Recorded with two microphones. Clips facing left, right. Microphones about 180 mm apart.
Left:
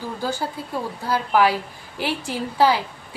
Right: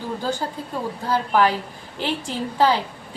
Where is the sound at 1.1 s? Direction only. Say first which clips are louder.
Even; 10° left (ahead or behind).